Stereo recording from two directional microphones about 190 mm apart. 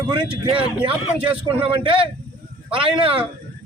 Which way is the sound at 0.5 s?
25° right (ahead or behind).